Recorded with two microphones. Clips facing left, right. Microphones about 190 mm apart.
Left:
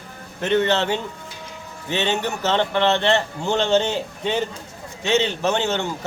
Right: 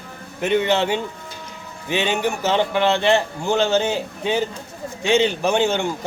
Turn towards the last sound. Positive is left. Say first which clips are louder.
# right 3 dB
turn(degrees=-10)  # may be behind; listen again after turning